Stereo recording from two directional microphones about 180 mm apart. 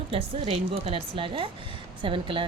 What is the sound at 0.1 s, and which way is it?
A woman's voice, 35° right (ahead or behind).